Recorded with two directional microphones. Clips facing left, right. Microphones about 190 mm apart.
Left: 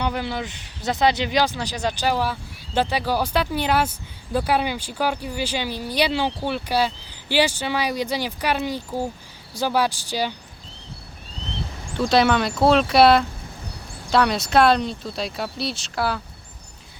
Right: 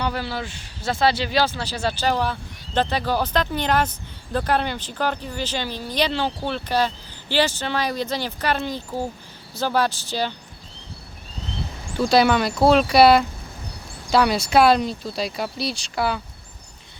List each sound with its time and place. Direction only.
0.0 s speech: 15° left (ahead or behind)
11.9 s speech: centre (ahead or behind)